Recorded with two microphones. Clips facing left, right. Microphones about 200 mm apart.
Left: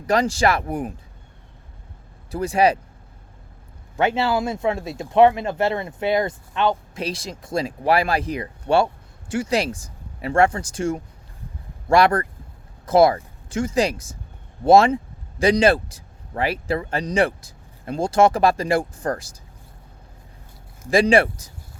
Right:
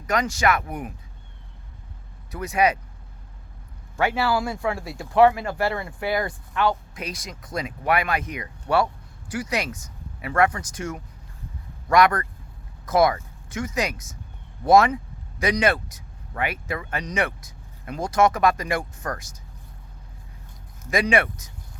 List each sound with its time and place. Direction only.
0.1 s speech: 30° left (ahead or behind)
2.3 s speech: 30° left (ahead or behind)
3.9 s speech: 25° left (ahead or behind)
20.9 s speech: 30° left (ahead or behind)